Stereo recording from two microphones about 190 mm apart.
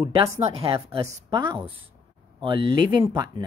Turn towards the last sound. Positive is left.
turn(degrees=-25)  # may be behind; listen again after turning